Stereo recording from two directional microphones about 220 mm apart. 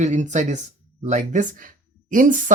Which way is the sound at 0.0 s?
30° right (ahead or behind).